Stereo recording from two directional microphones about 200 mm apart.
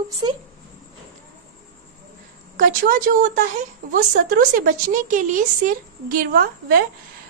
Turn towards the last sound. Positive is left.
turn(degrees=-50)  # may be behind; listen again after turning